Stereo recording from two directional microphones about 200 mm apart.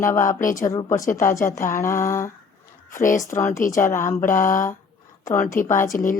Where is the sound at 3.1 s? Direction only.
15° left (ahead or behind).